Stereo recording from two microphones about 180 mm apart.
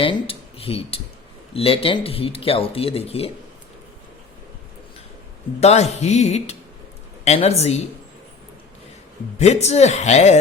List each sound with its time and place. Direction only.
0.0 s speech: 30° left (ahead or behind)
5.5 s speech: 35° left (ahead or behind)
9.4 s speech: 35° left (ahead or behind)